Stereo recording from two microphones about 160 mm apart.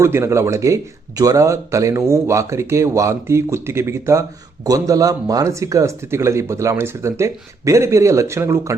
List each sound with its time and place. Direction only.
0.0 s speech: 15° right (ahead or behind)